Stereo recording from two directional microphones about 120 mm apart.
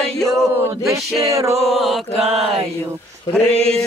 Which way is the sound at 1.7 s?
Centre (ahead or behind).